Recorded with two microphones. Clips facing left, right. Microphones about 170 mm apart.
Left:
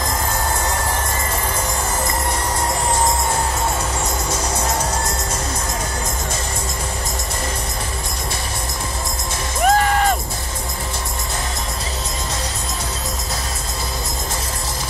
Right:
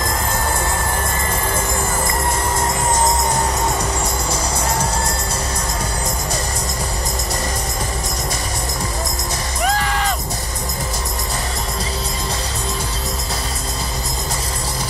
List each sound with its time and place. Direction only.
9.7 s music: 50° left (ahead or behind)